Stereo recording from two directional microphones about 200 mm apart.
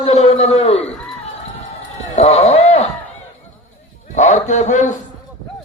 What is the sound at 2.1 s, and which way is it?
Speech, 30° left (ahead or behind).